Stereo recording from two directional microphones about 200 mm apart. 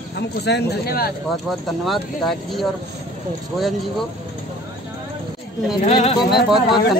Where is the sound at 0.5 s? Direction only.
55° left (ahead or behind).